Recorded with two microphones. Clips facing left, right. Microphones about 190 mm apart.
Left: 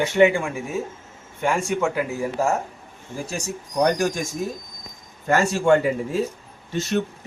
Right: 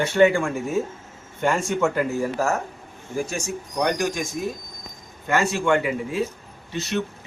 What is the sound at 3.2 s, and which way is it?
Speech, 35° left (ahead or behind).